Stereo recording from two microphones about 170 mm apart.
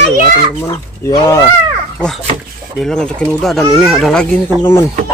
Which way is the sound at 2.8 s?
5° left (ahead or behind).